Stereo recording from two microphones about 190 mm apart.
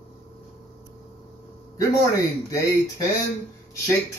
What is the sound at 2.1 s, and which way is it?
Speech, 15° left (ahead or behind).